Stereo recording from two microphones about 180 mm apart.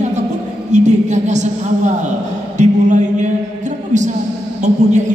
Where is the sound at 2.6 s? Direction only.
40° right (ahead or behind).